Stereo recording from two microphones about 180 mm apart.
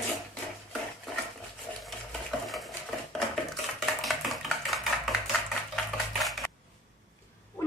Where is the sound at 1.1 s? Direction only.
Centre (ahead or behind).